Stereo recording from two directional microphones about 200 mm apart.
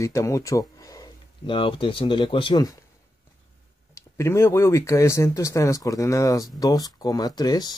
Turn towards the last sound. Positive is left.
turn(degrees=20)  # may be behind; listen again after turning